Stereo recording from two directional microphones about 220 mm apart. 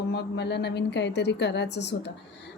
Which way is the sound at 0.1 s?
50° left (ahead or behind).